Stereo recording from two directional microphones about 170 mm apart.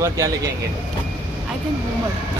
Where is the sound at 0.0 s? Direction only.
20° right (ahead or behind).